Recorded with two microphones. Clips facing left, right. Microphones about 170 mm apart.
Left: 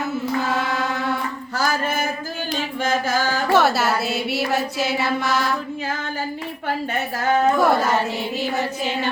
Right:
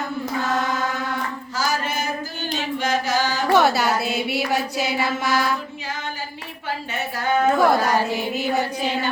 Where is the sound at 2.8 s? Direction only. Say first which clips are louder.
Left 1 dB; 50° left (ahead or behind).